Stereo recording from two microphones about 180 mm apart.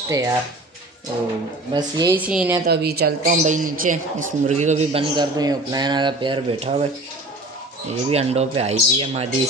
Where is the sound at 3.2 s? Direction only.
45° right (ahead or behind).